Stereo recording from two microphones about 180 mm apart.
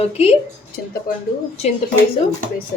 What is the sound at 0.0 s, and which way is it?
Speech, 35° left (ahead or behind).